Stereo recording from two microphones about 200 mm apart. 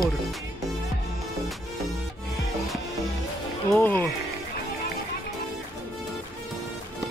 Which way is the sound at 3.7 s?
10° left (ahead or behind).